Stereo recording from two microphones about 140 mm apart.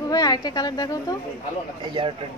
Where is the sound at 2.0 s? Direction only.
45° right (ahead or behind).